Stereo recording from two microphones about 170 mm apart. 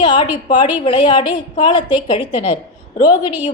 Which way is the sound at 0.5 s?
30° left (ahead or behind).